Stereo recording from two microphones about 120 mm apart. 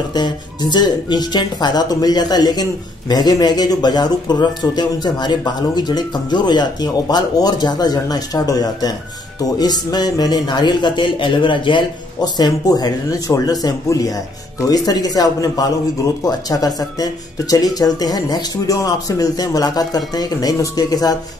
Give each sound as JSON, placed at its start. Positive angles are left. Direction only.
{"t": 0.1, "sound": "speech", "side_deg": 35}